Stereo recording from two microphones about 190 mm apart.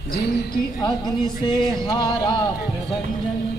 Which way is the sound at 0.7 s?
20° left (ahead or behind).